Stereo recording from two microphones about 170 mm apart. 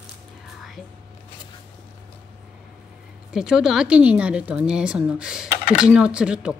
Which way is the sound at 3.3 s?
5° right (ahead or behind).